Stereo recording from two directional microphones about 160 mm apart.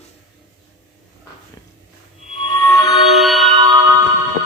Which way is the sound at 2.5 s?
20° left (ahead or behind).